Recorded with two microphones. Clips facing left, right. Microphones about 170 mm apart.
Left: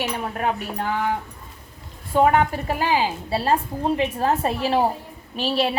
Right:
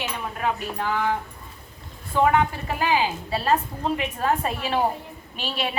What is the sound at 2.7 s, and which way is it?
A woman's voice, 30° left (ahead or behind).